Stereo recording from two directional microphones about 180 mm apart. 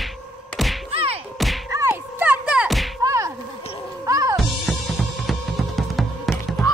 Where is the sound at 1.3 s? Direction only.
Centre (ahead or behind).